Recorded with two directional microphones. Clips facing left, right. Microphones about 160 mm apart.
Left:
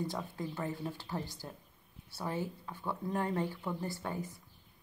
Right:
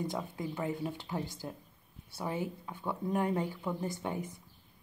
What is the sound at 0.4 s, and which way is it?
Speech, 15° right (ahead or behind).